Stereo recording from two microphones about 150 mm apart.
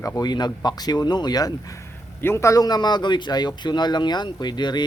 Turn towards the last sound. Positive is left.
turn(degrees=30)  # may be behind; listen again after turning